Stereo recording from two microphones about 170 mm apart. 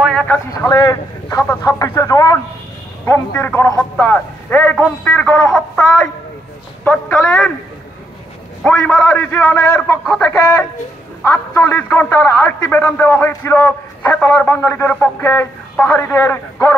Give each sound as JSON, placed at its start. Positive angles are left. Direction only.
{"t": 0.0, "sound": "vehicle", "side_deg": 5}
{"t": 0.5, "sound": "a man's voice", "side_deg": 20}
{"t": 8.6, "sound": "a man's voice", "side_deg": 5}